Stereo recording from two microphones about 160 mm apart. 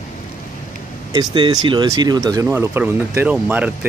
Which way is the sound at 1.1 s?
30° right (ahead or behind).